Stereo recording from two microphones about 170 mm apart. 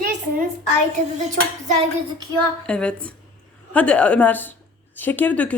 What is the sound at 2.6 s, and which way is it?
A woman's voice, 5° left (ahead or behind).